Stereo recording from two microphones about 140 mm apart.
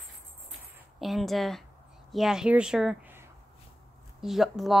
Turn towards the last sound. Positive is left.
turn(degrees=0)  # may be behind; listen again after turning